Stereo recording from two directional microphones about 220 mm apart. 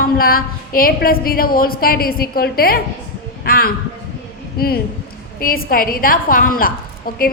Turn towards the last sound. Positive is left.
turn(degrees=40)  # may be behind; listen again after turning